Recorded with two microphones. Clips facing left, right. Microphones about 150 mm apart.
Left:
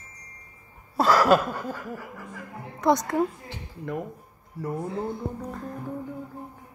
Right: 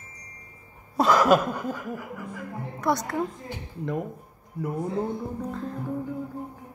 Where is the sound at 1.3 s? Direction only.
15° right (ahead or behind).